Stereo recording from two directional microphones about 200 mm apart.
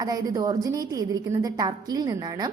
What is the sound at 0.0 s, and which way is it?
A woman's voice, 20° right (ahead or behind).